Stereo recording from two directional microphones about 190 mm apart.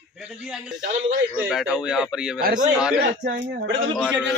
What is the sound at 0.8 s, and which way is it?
Speech, 45° right (ahead or behind).